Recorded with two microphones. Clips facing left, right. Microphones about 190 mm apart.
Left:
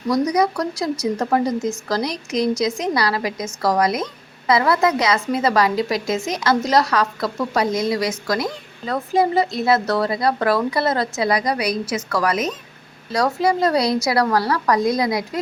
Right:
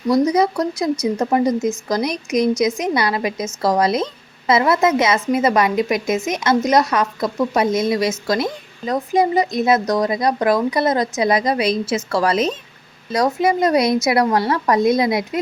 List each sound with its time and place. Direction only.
0.1 s speech: 25° right (ahead or behind)